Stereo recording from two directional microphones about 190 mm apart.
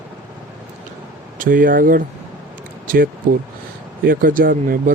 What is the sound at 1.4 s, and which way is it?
Speech, 45° right (ahead or behind).